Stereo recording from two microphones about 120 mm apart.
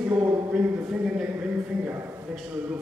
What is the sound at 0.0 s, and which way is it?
Speech, 15° right (ahead or behind).